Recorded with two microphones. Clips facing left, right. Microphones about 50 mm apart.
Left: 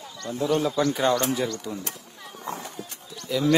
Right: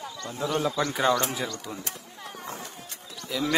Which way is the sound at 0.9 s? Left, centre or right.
Centre.